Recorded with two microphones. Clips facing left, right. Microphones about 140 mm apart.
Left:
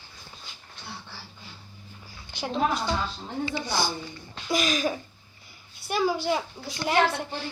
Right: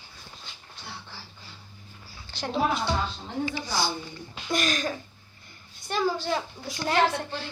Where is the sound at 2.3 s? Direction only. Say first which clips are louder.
Even; 15° left (ahead or behind).